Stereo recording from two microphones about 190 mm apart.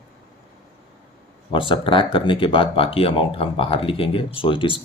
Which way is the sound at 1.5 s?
25° left (ahead or behind).